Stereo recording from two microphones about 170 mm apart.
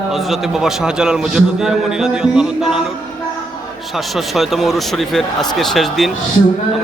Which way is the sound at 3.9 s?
Centre (ahead or behind).